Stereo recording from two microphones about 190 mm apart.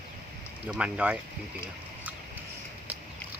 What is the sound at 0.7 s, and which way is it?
Speech, 5° right (ahead or behind).